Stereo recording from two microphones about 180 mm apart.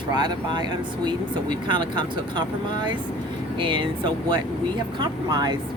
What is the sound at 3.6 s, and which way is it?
Speech, 25° right (ahead or behind).